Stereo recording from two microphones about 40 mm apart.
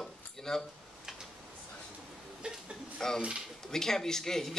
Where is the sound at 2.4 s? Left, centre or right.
Right.